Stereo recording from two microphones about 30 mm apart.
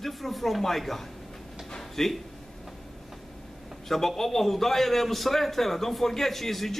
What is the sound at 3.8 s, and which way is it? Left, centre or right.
A man's voice, centre.